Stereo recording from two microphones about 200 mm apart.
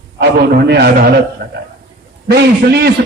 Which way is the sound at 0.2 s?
55° right (ahead or behind).